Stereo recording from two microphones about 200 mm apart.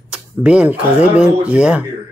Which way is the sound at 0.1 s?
5° right (ahead or behind).